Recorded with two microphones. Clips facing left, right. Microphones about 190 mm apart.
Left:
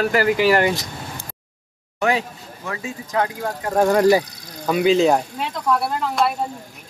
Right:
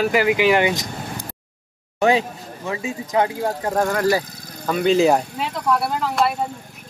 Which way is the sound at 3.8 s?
20° left (ahead or behind).